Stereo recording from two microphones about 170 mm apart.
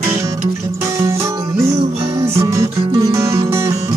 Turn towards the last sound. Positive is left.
turn(degrees=-20)  # may be behind; listen again after turning